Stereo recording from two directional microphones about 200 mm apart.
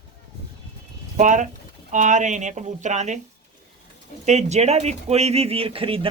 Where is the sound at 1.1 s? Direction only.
40° right (ahead or behind).